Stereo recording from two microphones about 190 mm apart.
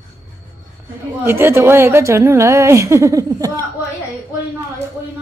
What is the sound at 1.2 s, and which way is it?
A woman's voice, 10° right (ahead or behind).